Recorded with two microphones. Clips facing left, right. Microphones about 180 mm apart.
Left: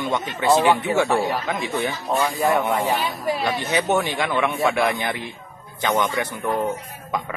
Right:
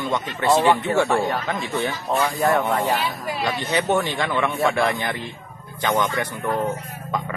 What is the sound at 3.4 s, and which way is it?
A man's voice, 15° left (ahead or behind).